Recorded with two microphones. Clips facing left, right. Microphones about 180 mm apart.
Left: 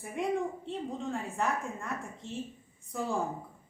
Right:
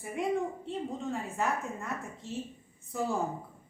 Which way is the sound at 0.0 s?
Centre (ahead or behind).